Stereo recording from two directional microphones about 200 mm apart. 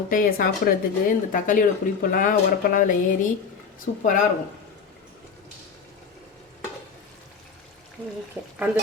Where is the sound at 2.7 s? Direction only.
40° left (ahead or behind).